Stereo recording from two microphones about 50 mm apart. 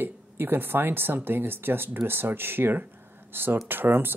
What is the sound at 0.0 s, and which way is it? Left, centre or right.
Speech, right.